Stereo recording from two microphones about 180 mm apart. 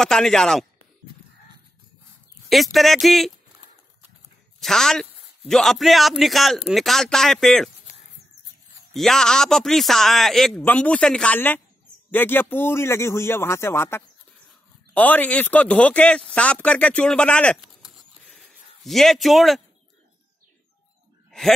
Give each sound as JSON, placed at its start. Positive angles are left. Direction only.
{"t": 0.0, "sound": "speech", "side_deg": 0}
{"t": 2.5, "sound": "a man's voice", "side_deg": 0}
{"t": 4.6, "sound": "a man's voice", "side_deg": 0}
{"t": 8.9, "sound": "a man's voice", "side_deg": 0}